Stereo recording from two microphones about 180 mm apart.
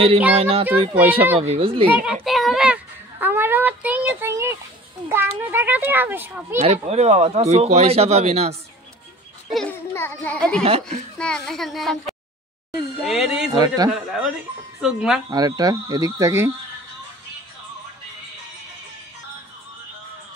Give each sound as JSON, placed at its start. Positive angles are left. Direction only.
{"t": 0.4, "sound": "speech", "side_deg": -30}
{"t": 1.9, "sound": "a child's voice", "side_deg": -10}
{"t": 2.2, "sound": "a sound", "side_deg": 0}
{"t": 5.1, "sound": "a child's voice", "side_deg": -10}
{"t": 6.6, "sound": "speech", "side_deg": -35}
{"t": 9.5, "sound": "a child's voice", "side_deg": 0}
{"t": 9.9, "sound": "a sound", "side_deg": 10}
{"t": 10.6, "sound": "speech", "side_deg": -35}
{"t": 11.1, "sound": "a child's voice", "side_deg": 5}
{"t": 13.0, "sound": "a child's voice", "side_deg": 0}
{"t": 13.5, "sound": "speech", "side_deg": -20}
{"t": 13.9, "sound": "a child's voice", "side_deg": -5}
{"t": 15.2, "sound": "speech", "side_deg": -20}